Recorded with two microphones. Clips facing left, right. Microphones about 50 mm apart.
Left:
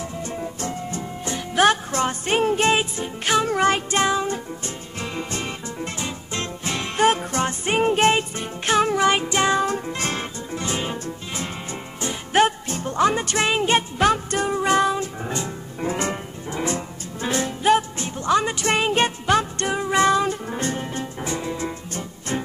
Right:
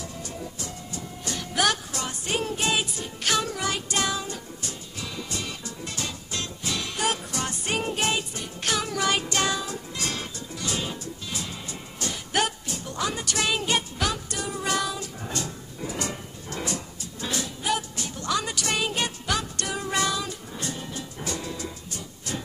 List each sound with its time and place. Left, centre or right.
0.0 s music: left
3.4 s music: left
9.6 s music: left
20.1 s music: left
21.3 s music: left